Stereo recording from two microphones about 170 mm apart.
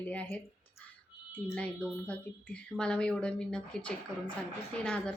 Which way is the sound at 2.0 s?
10° left (ahead or behind).